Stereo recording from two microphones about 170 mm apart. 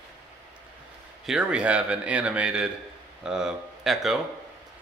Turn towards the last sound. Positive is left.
turn(degrees=0)  # may be behind; listen again after turning